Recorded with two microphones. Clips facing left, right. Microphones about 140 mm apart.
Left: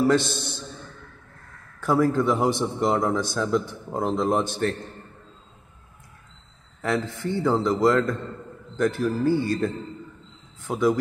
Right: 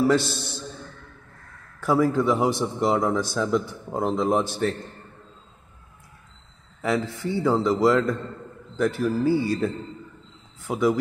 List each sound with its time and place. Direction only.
0.0 s a man's voice: 5° right (ahead or behind)
1.8 s a man's voice: 5° right (ahead or behind)
6.8 s a man's voice: 5° right (ahead or behind)
10.7 s a man's voice: 5° right (ahead or behind)